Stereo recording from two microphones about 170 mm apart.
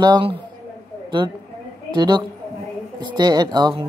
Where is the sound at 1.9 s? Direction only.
25° right (ahead or behind).